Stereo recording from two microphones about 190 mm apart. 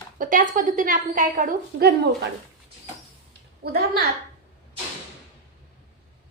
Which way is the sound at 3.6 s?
55° right (ahead or behind).